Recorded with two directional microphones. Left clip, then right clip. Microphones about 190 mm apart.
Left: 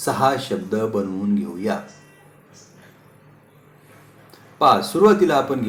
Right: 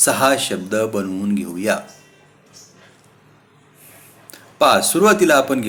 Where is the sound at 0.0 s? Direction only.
30° right (ahead or behind).